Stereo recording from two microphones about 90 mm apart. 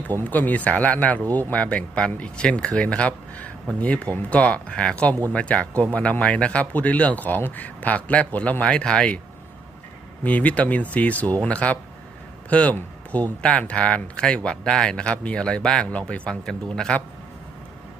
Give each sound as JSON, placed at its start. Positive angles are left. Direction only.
{"t": 0.1, "sound": "speech", "side_deg": 20}
{"t": 10.2, "sound": "speech", "side_deg": 15}